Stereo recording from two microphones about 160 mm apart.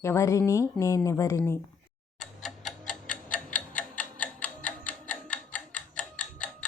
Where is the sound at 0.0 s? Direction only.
20° left (ahead or behind).